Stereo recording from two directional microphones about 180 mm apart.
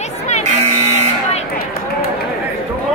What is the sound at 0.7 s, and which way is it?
Buzzer, 35° right (ahead or behind).